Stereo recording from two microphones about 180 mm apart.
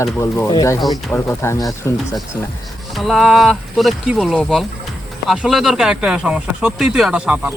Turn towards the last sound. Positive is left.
turn(degrees=-5)  # may be behind; listen again after turning